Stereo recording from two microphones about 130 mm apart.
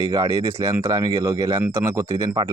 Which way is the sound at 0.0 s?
25° right (ahead or behind).